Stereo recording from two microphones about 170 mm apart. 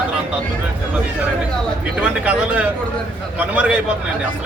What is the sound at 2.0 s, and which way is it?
Speech, 10° right (ahead or behind).